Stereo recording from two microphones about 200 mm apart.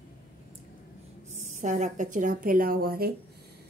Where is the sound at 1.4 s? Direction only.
35° right (ahead or behind).